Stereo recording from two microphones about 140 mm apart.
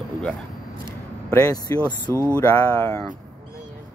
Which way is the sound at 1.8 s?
20° right (ahead or behind).